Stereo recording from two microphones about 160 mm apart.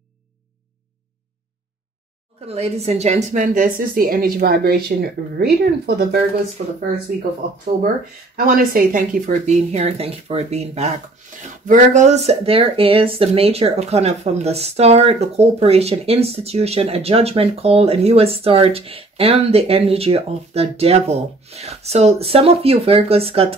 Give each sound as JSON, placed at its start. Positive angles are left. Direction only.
{"t": 2.4, "sound": "speech", "side_deg": -40}
{"t": 6.6, "sound": "speech", "side_deg": -50}
{"t": 8.4, "sound": "speech", "side_deg": -60}